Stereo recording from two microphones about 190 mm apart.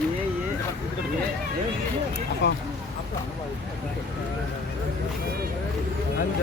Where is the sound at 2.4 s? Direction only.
65° left (ahead or behind).